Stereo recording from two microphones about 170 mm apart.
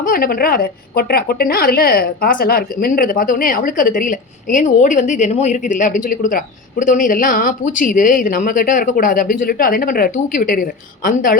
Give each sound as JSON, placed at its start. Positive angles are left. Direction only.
{"t": 0.0, "sound": "a woman's voice", "side_deg": 60}